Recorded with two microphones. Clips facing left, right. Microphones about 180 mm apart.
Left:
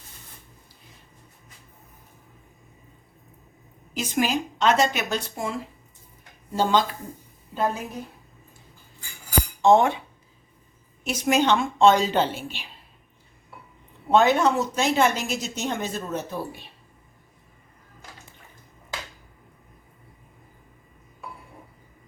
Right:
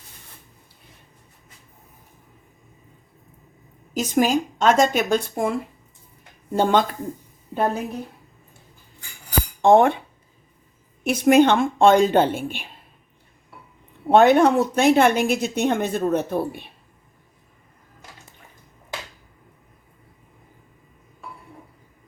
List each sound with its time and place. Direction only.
3.9 s a woman's voice: 45° right (ahead or behind)
9.6 s speech: 55° right (ahead or behind)
11.0 s a woman's voice: 55° right (ahead or behind)
14.1 s a woman's voice: 55° right (ahead or behind)